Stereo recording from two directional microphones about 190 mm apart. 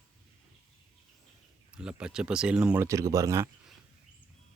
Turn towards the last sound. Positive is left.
turn(degrees=-15)  # may be behind; listen again after turning